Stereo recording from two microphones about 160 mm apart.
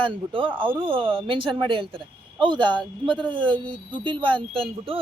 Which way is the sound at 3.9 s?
30° right (ahead or behind).